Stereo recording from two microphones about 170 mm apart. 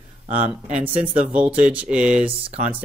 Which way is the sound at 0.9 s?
45° right (ahead or behind).